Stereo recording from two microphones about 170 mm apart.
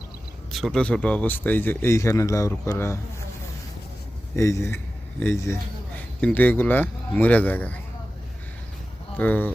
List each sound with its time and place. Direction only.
0.5 s speech: centre (ahead or behind)
4.4 s speech: 15° left (ahead or behind)
9.1 s speech: 10° left (ahead or behind)